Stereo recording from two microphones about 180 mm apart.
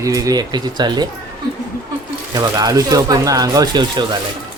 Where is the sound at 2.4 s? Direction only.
20° right (ahead or behind).